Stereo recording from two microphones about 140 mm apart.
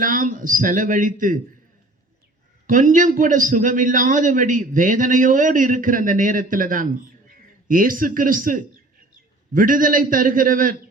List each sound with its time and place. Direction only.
0.0 s a man's voice: 70° right (ahead or behind)
2.6 s a man's voice: 70° right (ahead or behind)